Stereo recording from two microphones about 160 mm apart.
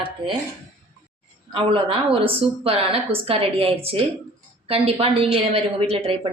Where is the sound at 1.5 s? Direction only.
35° right (ahead or behind).